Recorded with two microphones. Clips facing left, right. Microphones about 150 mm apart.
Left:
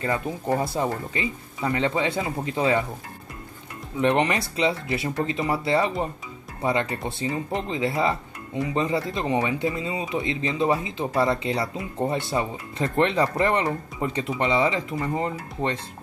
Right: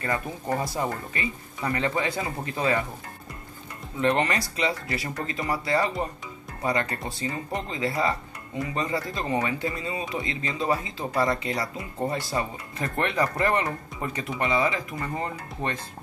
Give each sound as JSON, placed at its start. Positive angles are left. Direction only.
{"t": 0.0, "sound": "speech", "side_deg": 20}
{"t": 4.0, "sound": "speech", "side_deg": 20}